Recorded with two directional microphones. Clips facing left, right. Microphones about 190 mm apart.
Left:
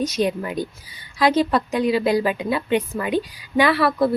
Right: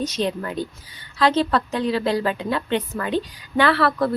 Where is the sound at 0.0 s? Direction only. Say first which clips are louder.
Left 2 dB; 10° left (ahead or behind).